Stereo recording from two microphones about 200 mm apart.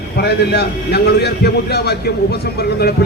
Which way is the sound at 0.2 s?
55° left (ahead or behind).